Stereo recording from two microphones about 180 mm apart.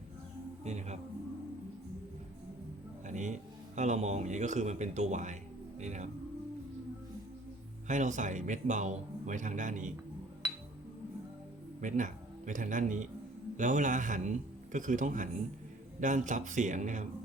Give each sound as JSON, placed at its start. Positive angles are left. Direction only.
{"t": 0.6, "sound": "music", "side_deg": -40}
{"t": 3.1, "sound": "speech", "side_deg": -40}
{"t": 7.9, "sound": "a man's voice", "side_deg": -45}
{"t": 11.8, "sound": "a man's voice", "side_deg": -45}